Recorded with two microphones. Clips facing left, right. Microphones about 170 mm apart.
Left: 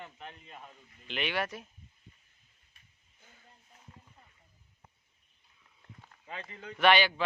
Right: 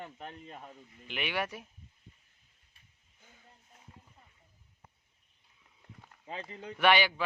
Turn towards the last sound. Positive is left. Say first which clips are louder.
# left 1 dB
turn(degrees=-10)  # may be behind; listen again after turning